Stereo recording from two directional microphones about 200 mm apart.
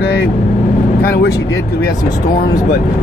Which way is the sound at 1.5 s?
15° left (ahead or behind).